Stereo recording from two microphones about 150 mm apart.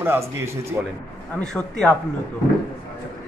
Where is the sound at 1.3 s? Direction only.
5° left (ahead or behind).